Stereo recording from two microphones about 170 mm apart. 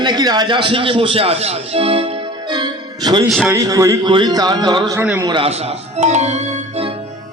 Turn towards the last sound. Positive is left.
turn(degrees=-40)  # may be behind; listen again after turning